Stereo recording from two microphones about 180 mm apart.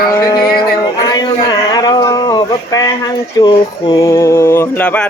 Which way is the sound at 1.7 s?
20° left (ahead or behind).